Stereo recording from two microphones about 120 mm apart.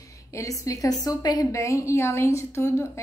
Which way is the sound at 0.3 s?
25° left (ahead or behind).